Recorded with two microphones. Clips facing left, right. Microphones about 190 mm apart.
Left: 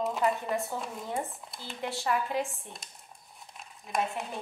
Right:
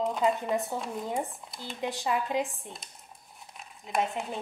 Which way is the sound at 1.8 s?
20° right (ahead or behind).